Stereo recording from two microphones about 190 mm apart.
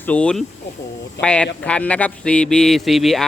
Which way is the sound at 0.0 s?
5° left (ahead or behind).